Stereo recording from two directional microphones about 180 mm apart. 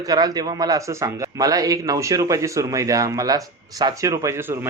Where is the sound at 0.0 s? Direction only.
20° right (ahead or behind).